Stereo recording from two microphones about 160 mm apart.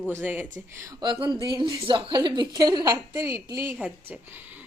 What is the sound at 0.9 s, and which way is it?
A woman's voice, 30° right (ahead or behind).